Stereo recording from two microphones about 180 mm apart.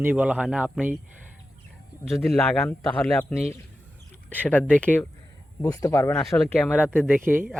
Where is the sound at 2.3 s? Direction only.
Centre (ahead or behind).